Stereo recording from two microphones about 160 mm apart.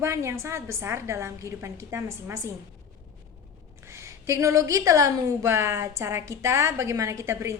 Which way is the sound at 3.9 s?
15° right (ahead or behind).